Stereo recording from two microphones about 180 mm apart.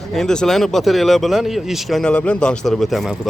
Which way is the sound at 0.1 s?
5° left (ahead or behind).